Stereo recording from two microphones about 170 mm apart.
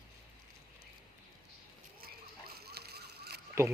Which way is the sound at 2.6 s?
70° right (ahead or behind).